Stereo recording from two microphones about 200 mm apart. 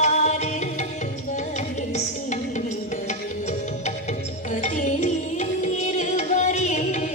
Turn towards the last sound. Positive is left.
turn(degrees=35)  # may be behind; listen again after turning